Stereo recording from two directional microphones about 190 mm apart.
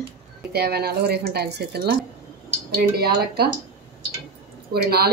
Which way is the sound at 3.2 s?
55° right (ahead or behind).